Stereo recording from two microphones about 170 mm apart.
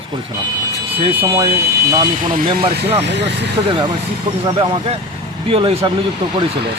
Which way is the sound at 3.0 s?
90° right.